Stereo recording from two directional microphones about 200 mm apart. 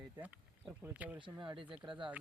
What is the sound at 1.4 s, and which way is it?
Speech, 25° right (ahead or behind).